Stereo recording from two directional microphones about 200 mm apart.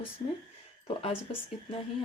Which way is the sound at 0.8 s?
30° left (ahead or behind).